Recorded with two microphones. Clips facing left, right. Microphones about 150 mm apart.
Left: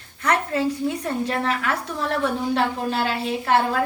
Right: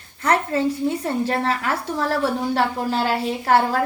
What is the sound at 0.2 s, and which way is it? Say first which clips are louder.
A woman's voice: right 2 dB; 30° right (ahead or behind).